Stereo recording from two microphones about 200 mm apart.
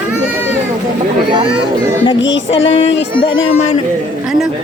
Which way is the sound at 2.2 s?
65° left (ahead or behind).